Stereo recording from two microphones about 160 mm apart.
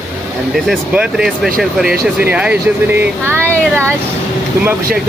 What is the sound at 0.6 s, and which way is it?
Speech, 5° right (ahead or behind).